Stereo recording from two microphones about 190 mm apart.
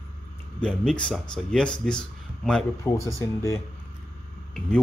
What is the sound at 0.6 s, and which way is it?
Speech, 5° left (ahead or behind).